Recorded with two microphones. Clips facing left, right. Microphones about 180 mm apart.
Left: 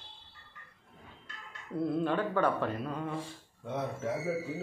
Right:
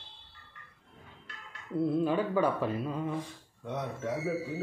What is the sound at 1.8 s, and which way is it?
Speech, 5° right (ahead or behind).